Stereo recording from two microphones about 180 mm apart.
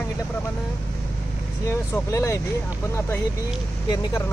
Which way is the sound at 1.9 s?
15° left (ahead or behind).